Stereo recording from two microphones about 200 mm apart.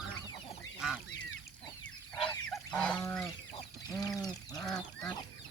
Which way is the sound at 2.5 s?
5° left (ahead or behind).